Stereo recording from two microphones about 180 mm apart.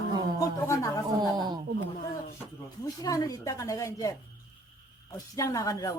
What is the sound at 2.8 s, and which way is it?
Speech, 20° left (ahead or behind).